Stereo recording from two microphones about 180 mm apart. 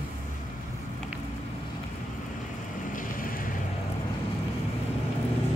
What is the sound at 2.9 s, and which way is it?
Vehicle, 50° left (ahead or behind).